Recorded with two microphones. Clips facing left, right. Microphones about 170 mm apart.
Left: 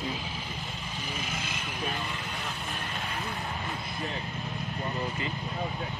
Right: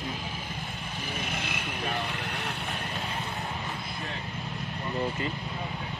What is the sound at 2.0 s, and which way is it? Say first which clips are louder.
Vehicle: right 3 dB; 65° right (ahead or behind).